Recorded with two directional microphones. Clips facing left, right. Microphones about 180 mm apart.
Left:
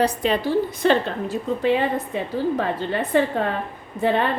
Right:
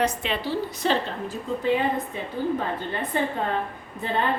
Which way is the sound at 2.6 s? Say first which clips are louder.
Left 5 dB; 80° left.